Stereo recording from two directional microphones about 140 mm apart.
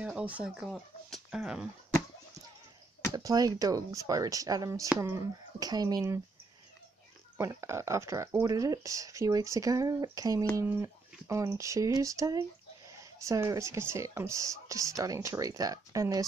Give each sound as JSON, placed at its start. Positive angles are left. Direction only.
{"t": 0.0, "sound": "speech", "side_deg": -10}
{"t": 3.3, "sound": "speech", "side_deg": -25}
{"t": 7.3, "sound": "speech", "side_deg": -20}